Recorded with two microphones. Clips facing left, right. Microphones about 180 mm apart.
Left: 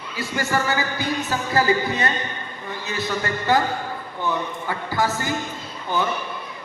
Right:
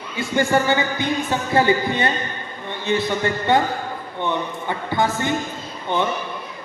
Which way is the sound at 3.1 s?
25° right (ahead or behind).